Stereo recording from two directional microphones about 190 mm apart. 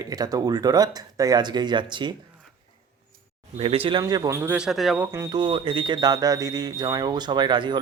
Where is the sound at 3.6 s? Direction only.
30° right (ahead or behind).